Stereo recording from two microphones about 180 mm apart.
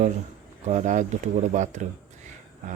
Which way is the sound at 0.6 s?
40° right (ahead or behind).